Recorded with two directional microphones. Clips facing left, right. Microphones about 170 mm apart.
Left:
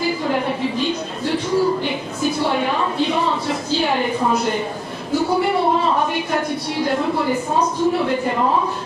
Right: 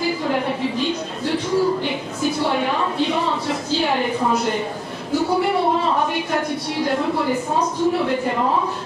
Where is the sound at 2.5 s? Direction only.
15° left (ahead or behind).